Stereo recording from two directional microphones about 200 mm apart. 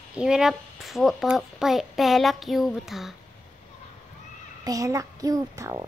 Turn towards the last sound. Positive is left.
turn(degrees=-15)  # may be behind; listen again after turning